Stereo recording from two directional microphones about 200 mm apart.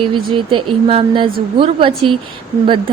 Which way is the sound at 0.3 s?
25° right (ahead or behind).